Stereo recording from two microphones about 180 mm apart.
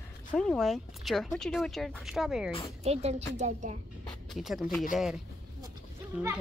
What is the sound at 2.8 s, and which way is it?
A woman's voice, 35° right (ahead or behind).